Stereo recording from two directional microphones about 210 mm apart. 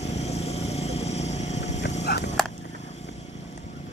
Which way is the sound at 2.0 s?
50° left (ahead or behind).